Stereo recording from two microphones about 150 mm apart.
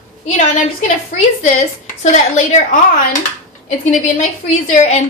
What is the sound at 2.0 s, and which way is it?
Speech, 50° left (ahead or behind).